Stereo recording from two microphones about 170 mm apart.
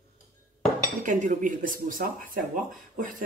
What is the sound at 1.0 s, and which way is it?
Speech, 50° right (ahead or behind).